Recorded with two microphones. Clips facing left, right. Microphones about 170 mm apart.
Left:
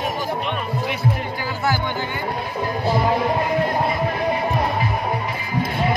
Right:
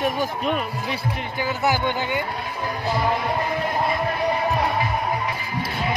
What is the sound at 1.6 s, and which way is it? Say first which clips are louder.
Speech: even; 20° right (ahead or behind).